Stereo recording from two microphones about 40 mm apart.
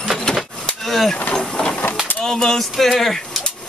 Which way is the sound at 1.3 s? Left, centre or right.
Centre.